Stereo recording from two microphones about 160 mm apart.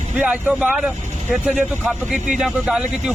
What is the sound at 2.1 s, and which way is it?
Speech, 5° right (ahead or behind).